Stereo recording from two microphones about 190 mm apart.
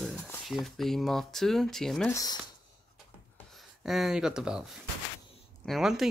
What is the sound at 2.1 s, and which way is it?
Speech, 20° left (ahead or behind).